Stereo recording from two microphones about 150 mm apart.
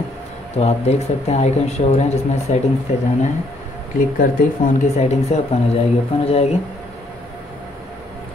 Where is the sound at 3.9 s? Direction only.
65° left (ahead or behind); by 6.5 s 45° left (ahead or behind).